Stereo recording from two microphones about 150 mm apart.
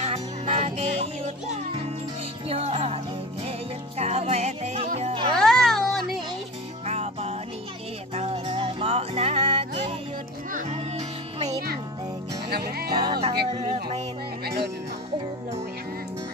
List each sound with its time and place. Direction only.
0.0 s music: 50° right (ahead or behind)
2.4 s music: 40° right (ahead or behind)
4.0 s music: 45° right (ahead or behind)
5.3 s music: 5° left (ahead or behind)
6.9 s music: 40° right (ahead or behind)
12.4 s music: 90° right
12.9 s music: 30° right (ahead or behind)
14.4 s music: 90° right